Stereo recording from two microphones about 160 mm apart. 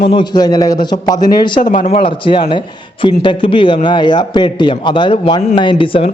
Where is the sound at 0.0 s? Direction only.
30° left (ahead or behind).